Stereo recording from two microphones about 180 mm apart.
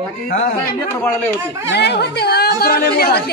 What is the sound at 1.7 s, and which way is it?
Speech, 70° left (ahead or behind).